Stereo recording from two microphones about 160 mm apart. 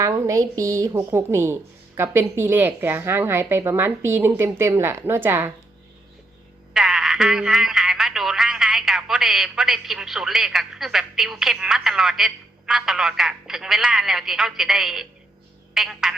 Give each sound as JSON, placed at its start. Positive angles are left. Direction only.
{"t": 0.0, "sound": "a woman's voice", "side_deg": -20}
{"t": 6.7, "sound": "speech", "side_deg": 0}
{"t": 15.7, "sound": "frog", "side_deg": -5}